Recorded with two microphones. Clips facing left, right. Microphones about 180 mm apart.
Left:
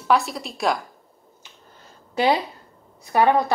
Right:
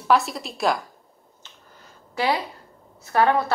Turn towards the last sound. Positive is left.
turn(degrees=15)  # may be behind; listen again after turning